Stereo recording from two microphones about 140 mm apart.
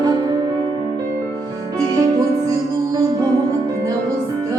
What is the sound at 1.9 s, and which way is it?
Music, 25° right (ahead or behind).